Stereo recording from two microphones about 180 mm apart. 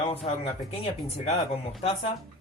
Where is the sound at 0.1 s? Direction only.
35° left (ahead or behind).